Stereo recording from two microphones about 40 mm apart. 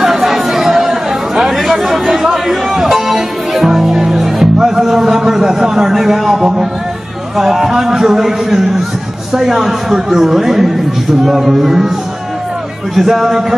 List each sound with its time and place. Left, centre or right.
0.0 s chatter: centre
7.3 s a man's voice: centre
12.9 s a man's voice: centre